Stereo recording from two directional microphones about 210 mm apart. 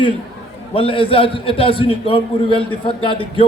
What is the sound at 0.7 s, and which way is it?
A man's voice, 25° left (ahead or behind).